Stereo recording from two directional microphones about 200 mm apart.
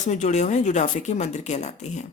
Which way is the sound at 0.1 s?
35° left (ahead or behind).